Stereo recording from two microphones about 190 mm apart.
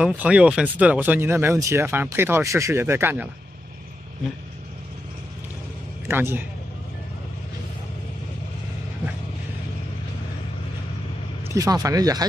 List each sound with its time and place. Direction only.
0.0 s speech: 5° right (ahead or behind)
6.0 s speech: 10° right (ahead or behind)
11.5 s speech: 20° right (ahead or behind)